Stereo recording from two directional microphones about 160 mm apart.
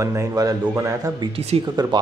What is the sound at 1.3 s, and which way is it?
Speech, 40° right (ahead or behind).